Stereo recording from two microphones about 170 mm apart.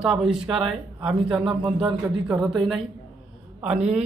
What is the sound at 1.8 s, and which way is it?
Speech, 5° right (ahead or behind).